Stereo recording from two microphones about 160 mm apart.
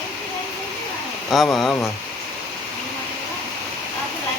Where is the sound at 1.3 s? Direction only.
Centre (ahead or behind).